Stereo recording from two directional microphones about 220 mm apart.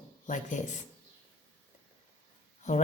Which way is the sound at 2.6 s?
35° left (ahead or behind).